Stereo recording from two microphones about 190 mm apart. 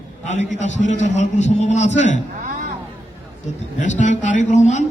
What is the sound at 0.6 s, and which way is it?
A man's voice, 40° left (ahead or behind).